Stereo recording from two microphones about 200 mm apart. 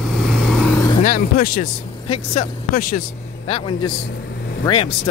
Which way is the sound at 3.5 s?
25° left (ahead or behind).